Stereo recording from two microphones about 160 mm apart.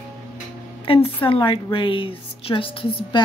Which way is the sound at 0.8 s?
35° left (ahead or behind).